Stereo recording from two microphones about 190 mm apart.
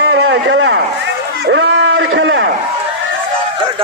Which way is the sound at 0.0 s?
85° right.